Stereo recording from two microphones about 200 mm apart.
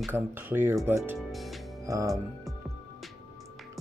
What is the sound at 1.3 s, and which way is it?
Speech, centre (ahead or behind).